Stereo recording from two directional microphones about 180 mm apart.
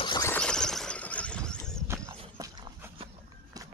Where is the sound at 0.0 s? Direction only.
25° left (ahead or behind).